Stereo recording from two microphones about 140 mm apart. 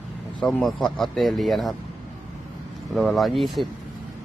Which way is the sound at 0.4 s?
5° left (ahead or behind).